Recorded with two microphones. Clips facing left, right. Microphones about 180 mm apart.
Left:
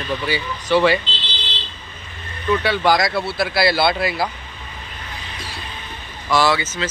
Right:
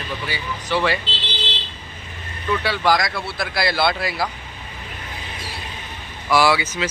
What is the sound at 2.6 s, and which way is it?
Speech, 25° left (ahead or behind).